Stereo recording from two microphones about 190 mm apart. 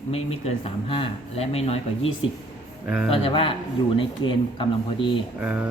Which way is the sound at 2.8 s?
5° right (ahead or behind).